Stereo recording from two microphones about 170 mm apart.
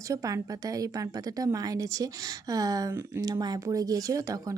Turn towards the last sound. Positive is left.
turn(degrees=-20)  # may be behind; listen again after turning